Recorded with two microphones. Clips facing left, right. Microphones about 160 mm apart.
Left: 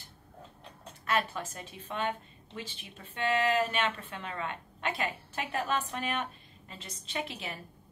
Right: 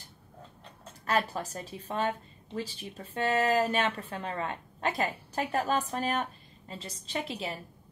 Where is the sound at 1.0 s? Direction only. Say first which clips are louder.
Right 2 dB; 35° right (ahead or behind).